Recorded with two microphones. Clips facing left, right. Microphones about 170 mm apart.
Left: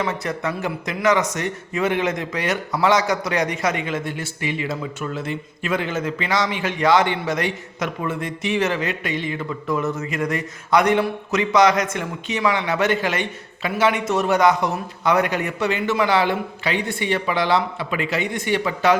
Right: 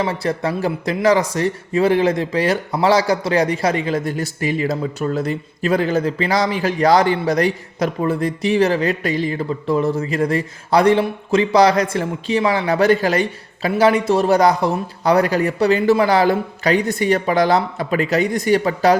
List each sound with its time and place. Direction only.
0.0 s speech: 30° right (ahead or behind)